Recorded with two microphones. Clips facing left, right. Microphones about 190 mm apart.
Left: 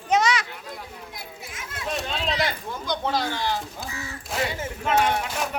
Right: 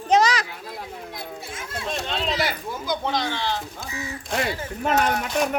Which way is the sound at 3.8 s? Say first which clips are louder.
Right 3 dB; 15° right (ahead or behind).